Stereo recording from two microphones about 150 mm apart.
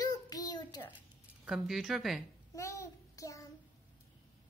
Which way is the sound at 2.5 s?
20° left (ahead or behind).